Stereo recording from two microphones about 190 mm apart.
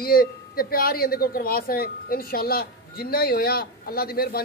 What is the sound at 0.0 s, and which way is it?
Speech, 50° left (ahead or behind).